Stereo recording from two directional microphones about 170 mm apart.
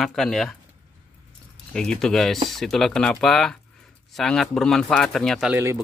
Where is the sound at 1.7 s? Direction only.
5° left (ahead or behind).